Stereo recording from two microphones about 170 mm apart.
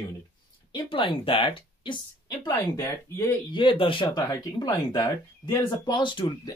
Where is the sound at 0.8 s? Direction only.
30° left (ahead or behind).